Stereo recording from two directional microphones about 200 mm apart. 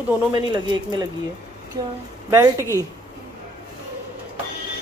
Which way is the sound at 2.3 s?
15° right (ahead or behind).